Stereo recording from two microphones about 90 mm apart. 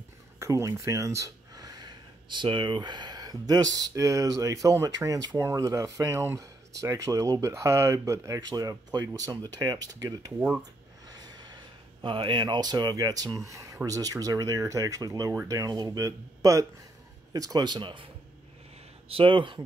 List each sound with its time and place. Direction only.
0.4 s speech: 35° right (ahead or behind)
10.6 s a sound: 50° right (ahead or behind)
12.0 s speech: 65° right (ahead or behind)
19.0 s speech: 80° right